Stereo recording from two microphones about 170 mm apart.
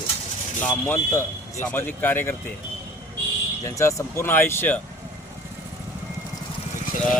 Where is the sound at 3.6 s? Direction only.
15° left (ahead or behind).